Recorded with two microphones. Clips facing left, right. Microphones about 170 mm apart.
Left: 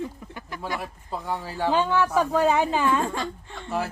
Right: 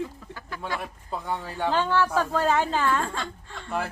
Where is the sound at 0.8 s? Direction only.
5° left (ahead or behind).